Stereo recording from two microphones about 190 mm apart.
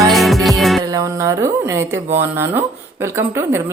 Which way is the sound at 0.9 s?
15° right (ahead or behind).